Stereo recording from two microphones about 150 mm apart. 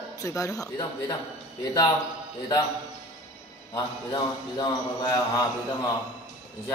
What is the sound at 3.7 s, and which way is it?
A woman's voice, 25° left (ahead or behind).